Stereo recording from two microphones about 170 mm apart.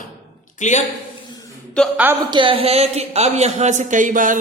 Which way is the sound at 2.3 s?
30° right (ahead or behind).